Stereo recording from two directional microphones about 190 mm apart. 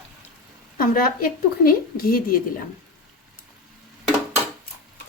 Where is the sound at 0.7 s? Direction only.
50° left (ahead or behind).